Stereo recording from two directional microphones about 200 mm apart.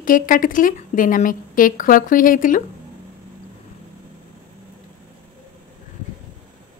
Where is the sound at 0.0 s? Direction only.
45° left (ahead or behind).